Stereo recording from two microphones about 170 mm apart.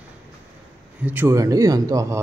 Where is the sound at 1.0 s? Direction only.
10° right (ahead or behind).